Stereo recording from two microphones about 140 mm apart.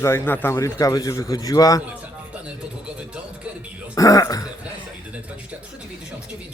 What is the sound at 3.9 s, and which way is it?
Speech, 25° left (ahead or behind).